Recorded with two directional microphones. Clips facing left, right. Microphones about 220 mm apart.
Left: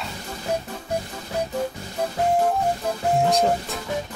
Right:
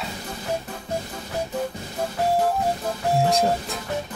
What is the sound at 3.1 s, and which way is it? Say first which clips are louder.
Music: left 1 dB; centre (ahead or behind).